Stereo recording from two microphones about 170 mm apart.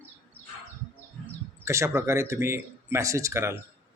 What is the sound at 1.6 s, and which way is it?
Speech, 15° right (ahead or behind).